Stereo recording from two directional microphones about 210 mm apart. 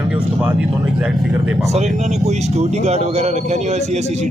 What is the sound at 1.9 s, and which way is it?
A man's voice, 30° right (ahead or behind).